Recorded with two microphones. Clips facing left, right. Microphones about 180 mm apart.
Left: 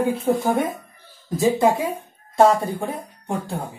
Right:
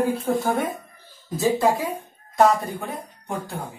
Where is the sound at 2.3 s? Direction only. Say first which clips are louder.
Left 2 dB; 30° left (ahead or behind).